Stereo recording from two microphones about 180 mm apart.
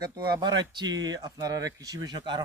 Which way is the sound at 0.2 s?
25° right (ahead or behind).